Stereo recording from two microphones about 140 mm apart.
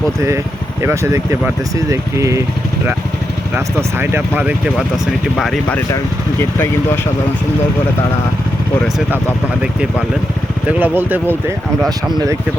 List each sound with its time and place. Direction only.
0.8 s speech: 20° right (ahead or behind)
3.5 s speech: 15° right (ahead or behind)
5.4 s speech: centre (ahead or behind)
10.7 s speech: 10° right (ahead or behind)